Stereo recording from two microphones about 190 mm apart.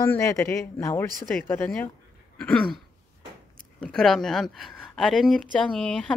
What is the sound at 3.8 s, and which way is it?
A woman's voice, 5° left (ahead or behind).